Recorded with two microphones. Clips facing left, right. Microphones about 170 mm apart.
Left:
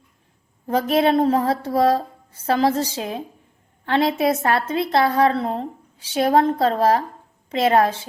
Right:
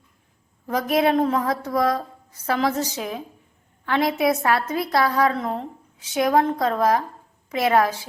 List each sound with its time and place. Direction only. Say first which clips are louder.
0.7 s a woman's voice: left 2 dB; 30° left (ahead or behind)